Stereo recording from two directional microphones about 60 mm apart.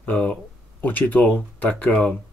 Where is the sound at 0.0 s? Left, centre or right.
Left.